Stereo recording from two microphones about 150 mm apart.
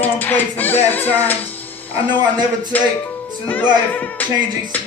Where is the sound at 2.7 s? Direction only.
10° left (ahead or behind).